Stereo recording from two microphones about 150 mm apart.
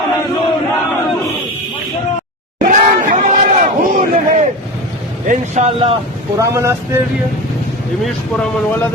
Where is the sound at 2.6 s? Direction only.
60° right (ahead or behind).